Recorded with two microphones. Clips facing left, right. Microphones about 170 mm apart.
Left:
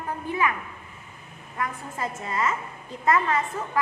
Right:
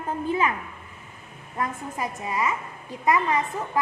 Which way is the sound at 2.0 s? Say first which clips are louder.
Even; 15° right (ahead or behind).